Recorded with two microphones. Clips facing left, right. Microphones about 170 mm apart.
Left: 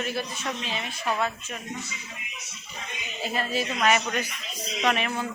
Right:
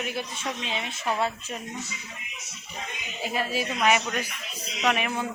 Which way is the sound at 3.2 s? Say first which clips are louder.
Even; 10° right (ahead or behind).